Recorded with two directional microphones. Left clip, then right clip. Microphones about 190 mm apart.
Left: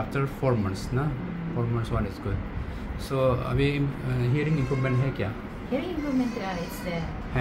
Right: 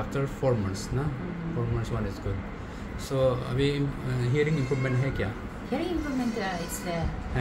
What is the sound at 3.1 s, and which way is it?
Speech, 25° left (ahead or behind).